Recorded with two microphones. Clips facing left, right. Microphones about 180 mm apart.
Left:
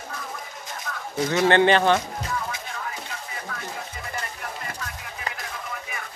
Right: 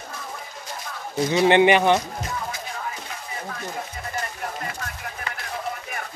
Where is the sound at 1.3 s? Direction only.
15° right (ahead or behind).